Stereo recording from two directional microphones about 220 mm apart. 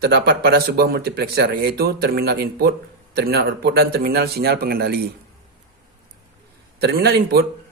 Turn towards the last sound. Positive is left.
turn(degrees=-45)  # may be behind; listen again after turning